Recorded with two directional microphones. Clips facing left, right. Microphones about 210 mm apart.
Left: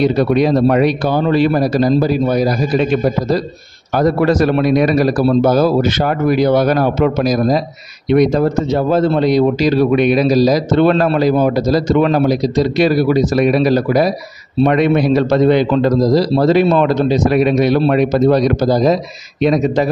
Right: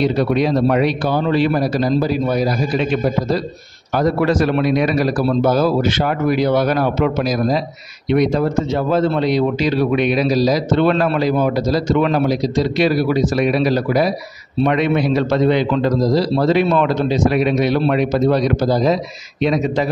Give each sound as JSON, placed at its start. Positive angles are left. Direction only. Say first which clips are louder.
{"t": 0.0, "sound": "speech", "louder": "left 3 dB", "side_deg": 45}